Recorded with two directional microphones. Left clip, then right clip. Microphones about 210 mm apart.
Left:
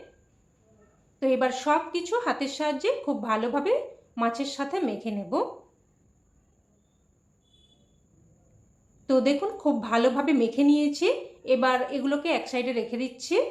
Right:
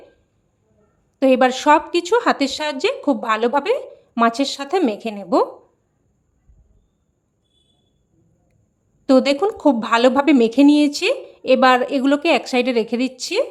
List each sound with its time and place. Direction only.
1.2 s speech: 50° right (ahead or behind)
9.0 s speech: 50° right (ahead or behind)